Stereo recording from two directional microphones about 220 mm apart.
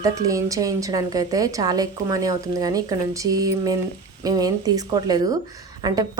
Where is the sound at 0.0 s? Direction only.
15° right (ahead or behind).